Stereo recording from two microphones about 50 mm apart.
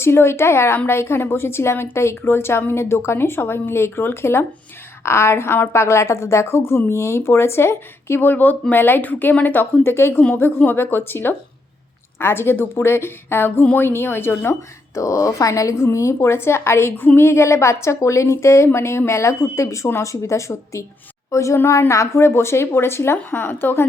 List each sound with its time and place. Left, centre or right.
0.0 s a woman's voice: left
8.2 s a woman's voice: left
10.3 s a woman's voice: left
14.9 s a woman's voice: left
17.2 s a woman's voice: left
19.5 s a woman's voice: left